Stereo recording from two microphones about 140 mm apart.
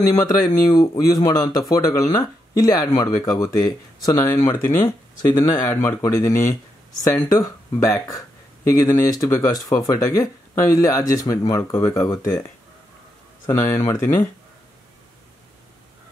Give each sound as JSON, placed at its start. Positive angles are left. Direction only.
{"t": 0.7, "sound": "speech", "side_deg": 25}